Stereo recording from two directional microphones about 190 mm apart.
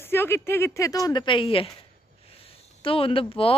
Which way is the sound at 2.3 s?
30° left (ahead or behind).